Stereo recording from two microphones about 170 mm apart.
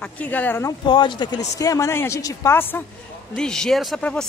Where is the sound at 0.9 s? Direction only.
25° left (ahead or behind); by 4.2 s 5° left (ahead or behind).